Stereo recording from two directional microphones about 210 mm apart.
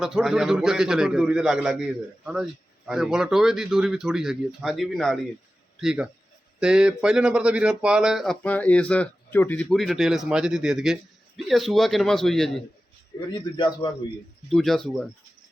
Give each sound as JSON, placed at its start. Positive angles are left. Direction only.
{"t": 0.0, "sound": "speech", "side_deg": 0}
{"t": 13.1, "sound": "a man's voice", "side_deg": 20}
{"t": 14.5, "sound": "speech", "side_deg": 0}